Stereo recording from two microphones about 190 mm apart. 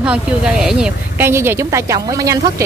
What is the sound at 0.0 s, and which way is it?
A woman's voice, 5° right (ahead or behind).